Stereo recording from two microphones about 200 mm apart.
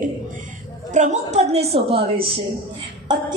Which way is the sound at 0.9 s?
35° right (ahead or behind).